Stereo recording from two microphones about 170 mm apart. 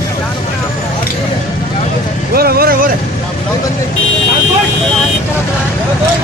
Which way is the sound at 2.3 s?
65° right (ahead or behind).